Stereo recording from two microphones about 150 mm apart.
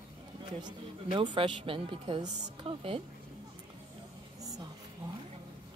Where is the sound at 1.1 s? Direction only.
35° right (ahead or behind).